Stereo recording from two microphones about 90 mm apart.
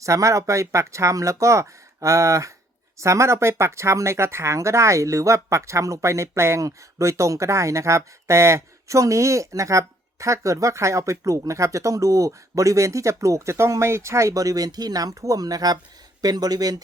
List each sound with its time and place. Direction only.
0.0 s speech: 35° right (ahead or behind)